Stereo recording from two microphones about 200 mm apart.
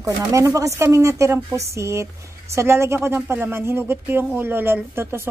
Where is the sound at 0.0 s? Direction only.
15° right (ahead or behind).